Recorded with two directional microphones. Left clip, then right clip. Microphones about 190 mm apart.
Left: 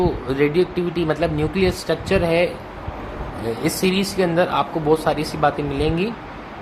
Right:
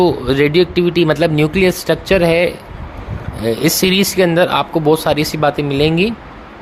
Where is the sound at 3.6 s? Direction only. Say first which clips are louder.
Right 7 dB; 50° right (ahead or behind).